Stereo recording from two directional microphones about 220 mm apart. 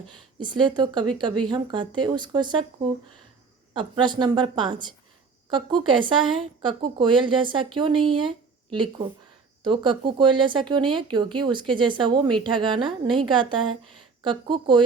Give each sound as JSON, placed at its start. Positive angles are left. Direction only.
{"t": 0.3, "sound": "speech", "side_deg": -20}
{"t": 3.8, "sound": "speech", "side_deg": -20}
{"t": 9.6, "sound": "speech", "side_deg": -20}